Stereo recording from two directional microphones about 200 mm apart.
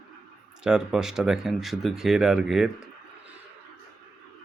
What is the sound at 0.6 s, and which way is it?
Speech, 5° right (ahead or behind).